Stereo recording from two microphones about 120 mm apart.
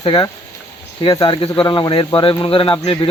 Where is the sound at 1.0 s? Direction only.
40° left (ahead or behind).